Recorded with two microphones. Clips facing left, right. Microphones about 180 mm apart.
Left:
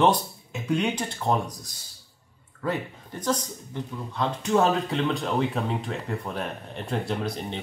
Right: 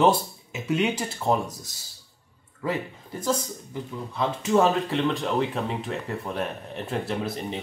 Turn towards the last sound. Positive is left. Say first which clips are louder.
# even
turn(degrees=-5)  # may be behind; listen again after turning